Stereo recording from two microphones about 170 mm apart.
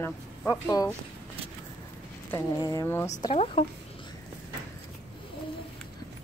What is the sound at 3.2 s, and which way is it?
Speech, 35° left (ahead or behind).